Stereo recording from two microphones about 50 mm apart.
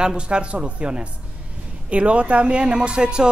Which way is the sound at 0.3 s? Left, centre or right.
Centre.